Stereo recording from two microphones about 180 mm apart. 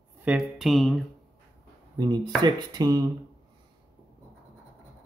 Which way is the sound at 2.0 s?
25° right (ahead or behind).